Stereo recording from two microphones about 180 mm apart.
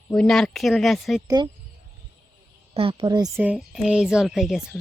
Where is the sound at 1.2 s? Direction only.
25° right (ahead or behind).